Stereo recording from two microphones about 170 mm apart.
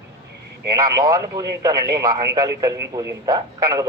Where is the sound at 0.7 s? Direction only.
20° right (ahead or behind).